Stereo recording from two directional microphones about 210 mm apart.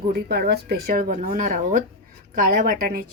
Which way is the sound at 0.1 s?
50° right (ahead or behind).